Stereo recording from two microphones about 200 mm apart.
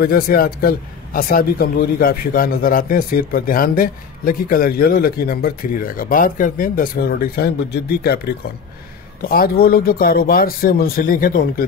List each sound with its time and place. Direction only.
0.0 s speech: 45° left (ahead or behind)
9.2 s speech: 45° left (ahead or behind)